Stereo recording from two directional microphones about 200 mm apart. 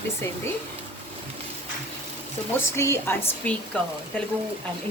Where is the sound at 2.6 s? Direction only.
15° left (ahead or behind).